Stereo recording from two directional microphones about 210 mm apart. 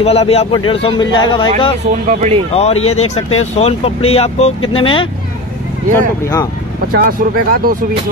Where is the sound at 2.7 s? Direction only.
90° left.